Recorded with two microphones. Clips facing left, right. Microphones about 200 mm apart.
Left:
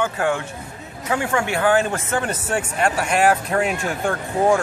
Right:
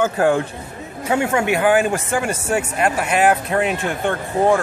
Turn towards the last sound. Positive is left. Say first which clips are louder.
# right 1 dB
turn(degrees=0)  # may be behind; listen again after turning